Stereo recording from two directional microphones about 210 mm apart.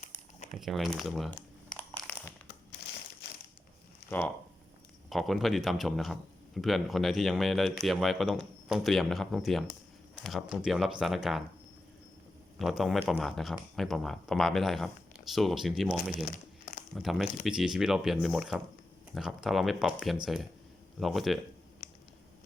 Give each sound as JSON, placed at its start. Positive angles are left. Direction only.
{"t": 0.6, "sound": "speech", "side_deg": 0}
{"t": 4.1, "sound": "speech", "side_deg": 5}
{"t": 12.5, "sound": "speech", "side_deg": 0}
{"t": 16.1, "sound": "crumpling", "side_deg": 45}
{"t": 16.9, "sound": "speech", "side_deg": 0}